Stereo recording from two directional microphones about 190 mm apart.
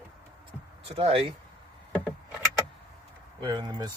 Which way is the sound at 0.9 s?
30° right (ahead or behind).